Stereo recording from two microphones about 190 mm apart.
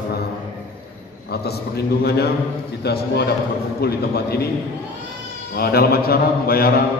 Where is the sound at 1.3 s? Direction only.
55° left (ahead or behind).